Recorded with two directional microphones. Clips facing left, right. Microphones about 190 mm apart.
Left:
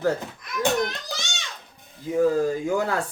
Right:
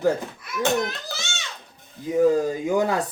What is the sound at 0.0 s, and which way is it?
Speech, 5° right (ahead or behind).